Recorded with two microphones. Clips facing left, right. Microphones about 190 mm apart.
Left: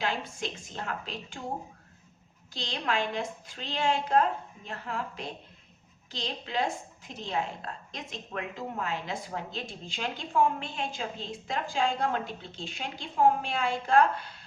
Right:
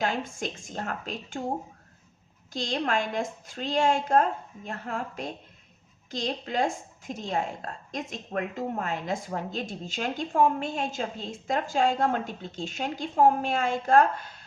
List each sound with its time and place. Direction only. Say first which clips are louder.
0.0 s a woman's voice: right 3 dB; 45° right (ahead or behind)
2.5 s a woman's voice: right 4 dB; 45° right (ahead or behind)